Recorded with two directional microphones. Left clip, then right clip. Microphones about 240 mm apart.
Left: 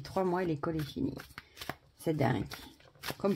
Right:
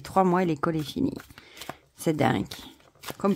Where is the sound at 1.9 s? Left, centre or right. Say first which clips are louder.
Right 7 dB; right.